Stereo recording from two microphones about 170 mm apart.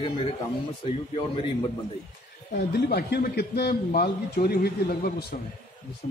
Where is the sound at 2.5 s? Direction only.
70° left (ahead or behind).